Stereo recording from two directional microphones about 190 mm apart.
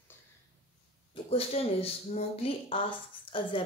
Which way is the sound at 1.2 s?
30° left (ahead or behind).